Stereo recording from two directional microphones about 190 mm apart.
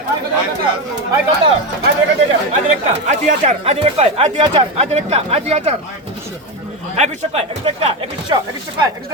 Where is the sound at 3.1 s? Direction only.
35° right (ahead or behind).